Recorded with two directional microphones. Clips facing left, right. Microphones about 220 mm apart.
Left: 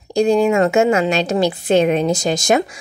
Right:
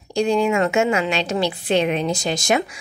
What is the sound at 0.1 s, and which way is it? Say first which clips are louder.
A woman's voice: left 4 dB; 40° left (ahead or behind).